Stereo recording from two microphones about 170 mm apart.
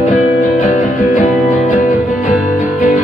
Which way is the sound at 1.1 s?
50° left (ahead or behind).